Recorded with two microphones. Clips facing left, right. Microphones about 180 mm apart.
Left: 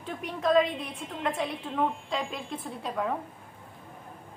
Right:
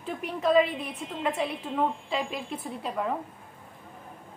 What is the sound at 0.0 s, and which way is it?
A woman's voice, 5° right (ahead or behind).